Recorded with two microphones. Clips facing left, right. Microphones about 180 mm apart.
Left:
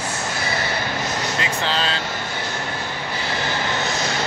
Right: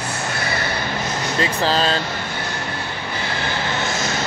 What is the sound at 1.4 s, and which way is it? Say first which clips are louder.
Speech: right 7 dB; 40° right (ahead or behind).